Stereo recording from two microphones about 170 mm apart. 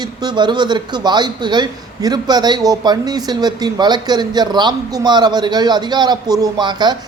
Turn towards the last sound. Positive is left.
turn(degrees=-25)  # may be behind; listen again after turning